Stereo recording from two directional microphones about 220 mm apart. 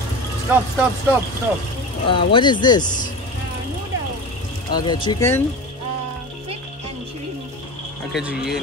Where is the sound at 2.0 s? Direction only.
25° left (ahead or behind).